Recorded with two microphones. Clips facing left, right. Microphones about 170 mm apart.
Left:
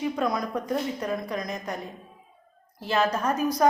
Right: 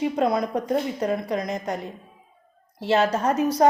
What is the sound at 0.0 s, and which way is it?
A woman's voice, 25° right (ahead or behind).